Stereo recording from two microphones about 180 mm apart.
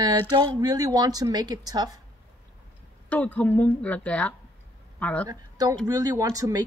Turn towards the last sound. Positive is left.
turn(degrees=-20)  # may be behind; listen again after turning